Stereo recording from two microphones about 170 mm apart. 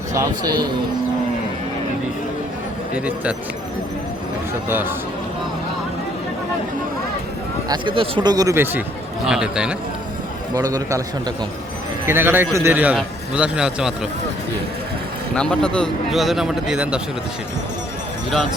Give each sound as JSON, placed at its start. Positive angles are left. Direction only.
{"t": 0.1, "sound": "a man's voice", "side_deg": -20}
{"t": 4.7, "sound": "a man's voice", "side_deg": -10}
{"t": 7.7, "sound": "speech", "side_deg": -30}
{"t": 10.5, "sound": "speech", "side_deg": -20}
{"t": 12.0, "sound": "a man's voice", "side_deg": -15}
{"t": 15.4, "sound": "speech", "side_deg": 5}